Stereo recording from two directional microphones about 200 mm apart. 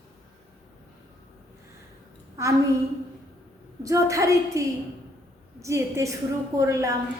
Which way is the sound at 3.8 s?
15° right (ahead or behind).